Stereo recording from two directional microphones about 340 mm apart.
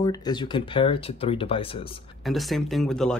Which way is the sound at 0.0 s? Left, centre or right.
Centre.